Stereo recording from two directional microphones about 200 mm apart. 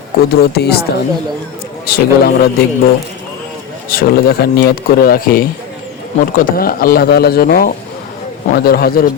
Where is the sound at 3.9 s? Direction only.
50° left (ahead or behind).